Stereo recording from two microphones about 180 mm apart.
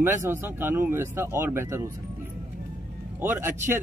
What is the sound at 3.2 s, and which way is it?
Speech, 10° right (ahead or behind).